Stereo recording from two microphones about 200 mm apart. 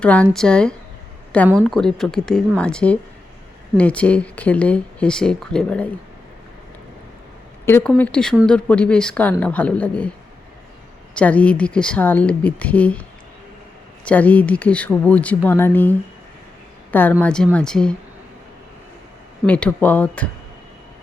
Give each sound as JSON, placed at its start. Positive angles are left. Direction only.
{"t": 0.0, "sound": "speech", "side_deg": 5}
{"t": 7.6, "sound": "speech", "side_deg": 10}
{"t": 11.1, "sound": "speech", "side_deg": 5}
{"t": 19.5, "sound": "speech", "side_deg": 5}